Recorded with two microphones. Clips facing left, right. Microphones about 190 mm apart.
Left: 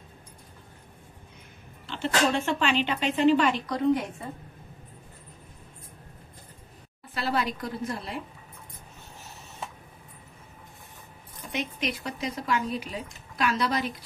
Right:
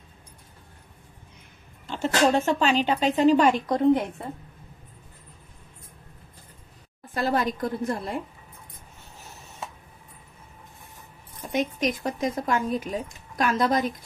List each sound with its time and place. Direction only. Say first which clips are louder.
1.9 s speech: right 4 dB; 45° right (ahead or behind)
7.2 s speech: right 4 dB; 45° right (ahead or behind)
11.4 s speech: right 6 dB; 45° right (ahead or behind)